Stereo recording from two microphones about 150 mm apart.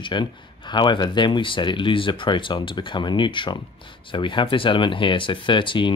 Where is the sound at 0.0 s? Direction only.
30° left (ahead or behind).